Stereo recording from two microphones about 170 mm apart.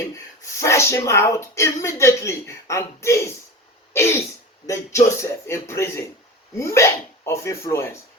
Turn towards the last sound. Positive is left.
turn(degrees=15)  # may be behind; listen again after turning